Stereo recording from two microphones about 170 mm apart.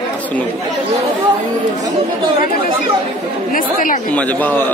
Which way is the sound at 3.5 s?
55° left (ahead or behind).